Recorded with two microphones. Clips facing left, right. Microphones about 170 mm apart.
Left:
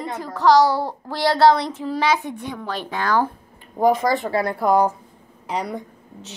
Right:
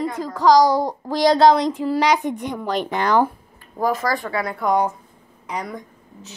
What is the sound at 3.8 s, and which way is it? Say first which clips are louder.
A woman's voice: left 4 dB; 20° left (ahead or behind).